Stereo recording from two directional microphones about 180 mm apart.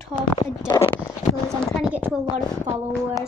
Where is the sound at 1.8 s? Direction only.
5° right (ahead or behind).